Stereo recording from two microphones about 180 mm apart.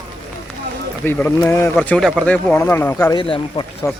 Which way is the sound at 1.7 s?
5° left (ahead or behind).